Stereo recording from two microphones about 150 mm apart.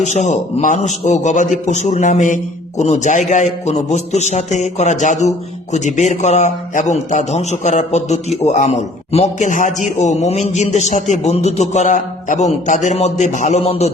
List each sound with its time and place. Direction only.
0.0 s a man's voice: 50° left (ahead or behind)